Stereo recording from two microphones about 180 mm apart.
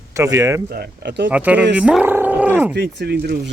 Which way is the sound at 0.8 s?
75° right (ahead or behind).